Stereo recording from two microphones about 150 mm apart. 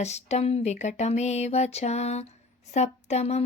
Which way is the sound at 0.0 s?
45° left (ahead or behind).